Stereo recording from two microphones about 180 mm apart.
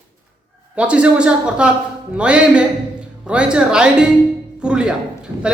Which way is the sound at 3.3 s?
5° right (ahead or behind).